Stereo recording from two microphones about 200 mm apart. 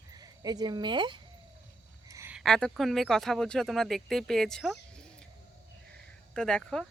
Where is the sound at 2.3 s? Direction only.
5° left (ahead or behind).